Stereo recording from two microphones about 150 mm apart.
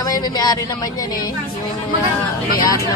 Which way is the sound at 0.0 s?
25° left (ahead or behind).